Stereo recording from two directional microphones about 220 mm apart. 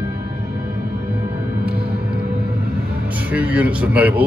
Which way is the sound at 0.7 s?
45° right (ahead or behind).